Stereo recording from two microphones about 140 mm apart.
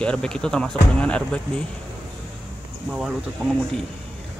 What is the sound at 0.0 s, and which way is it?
Speech, 5° left (ahead or behind).